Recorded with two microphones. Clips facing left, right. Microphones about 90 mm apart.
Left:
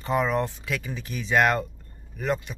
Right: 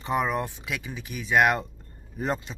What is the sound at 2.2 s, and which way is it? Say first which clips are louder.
Speech: left 2 dB; 30° right (ahead or behind).